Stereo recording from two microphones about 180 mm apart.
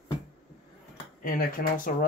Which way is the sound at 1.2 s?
50° left (ahead or behind).